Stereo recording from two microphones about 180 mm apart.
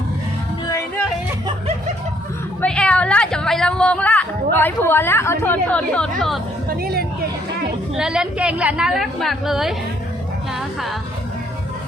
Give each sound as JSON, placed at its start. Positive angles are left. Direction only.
{"t": 2.6, "sound": "a woman's voice", "side_deg": 5}
{"t": 6.7, "sound": "speech", "side_deg": -55}
{"t": 7.9, "sound": "a woman's voice", "side_deg": -5}